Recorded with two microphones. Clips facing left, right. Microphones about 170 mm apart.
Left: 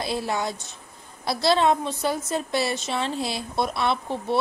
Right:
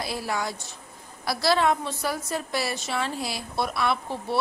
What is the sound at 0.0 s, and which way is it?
A woman's voice, 25° left (ahead or behind).